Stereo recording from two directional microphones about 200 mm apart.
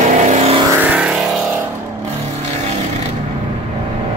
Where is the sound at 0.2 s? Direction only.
35° right (ahead or behind).